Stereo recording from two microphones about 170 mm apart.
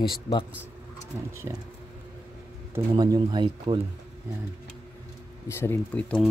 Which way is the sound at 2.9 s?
25° right (ahead or behind).